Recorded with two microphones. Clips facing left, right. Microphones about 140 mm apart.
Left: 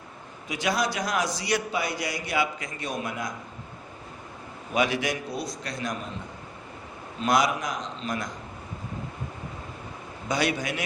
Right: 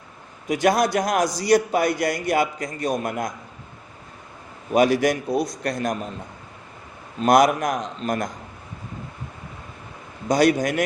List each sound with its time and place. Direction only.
0.4 s a man's voice: 50° right (ahead or behind)
4.7 s a man's voice: 40° right (ahead or behind)
7.2 s a man's voice: 50° right (ahead or behind)
10.2 s a man's voice: 40° right (ahead or behind)